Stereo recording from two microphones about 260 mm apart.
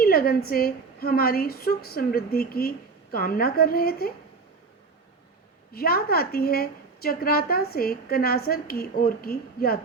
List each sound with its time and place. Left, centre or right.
0.0 s a woman's voice: left
5.7 s a woman's voice: left